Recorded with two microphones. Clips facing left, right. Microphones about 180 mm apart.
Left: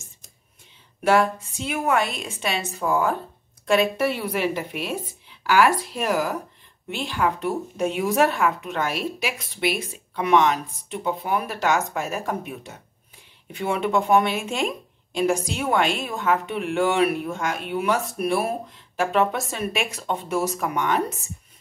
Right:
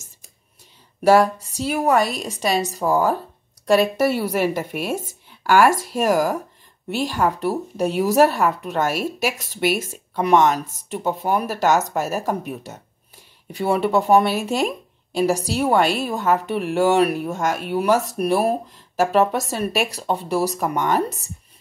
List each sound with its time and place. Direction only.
1.0 s a woman's voice: 40° right (ahead or behind)
13.5 s a woman's voice: 35° right (ahead or behind)